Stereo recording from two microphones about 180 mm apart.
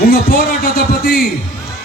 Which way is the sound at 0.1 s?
55° left (ahead or behind).